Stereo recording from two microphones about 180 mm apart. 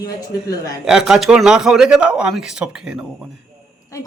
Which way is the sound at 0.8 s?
Centre (ahead or behind).